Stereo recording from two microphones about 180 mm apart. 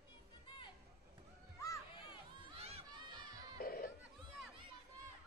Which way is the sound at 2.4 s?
35° right (ahead or behind).